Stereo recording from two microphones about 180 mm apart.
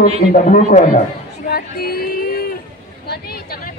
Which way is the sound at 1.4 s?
55° left (ahead or behind).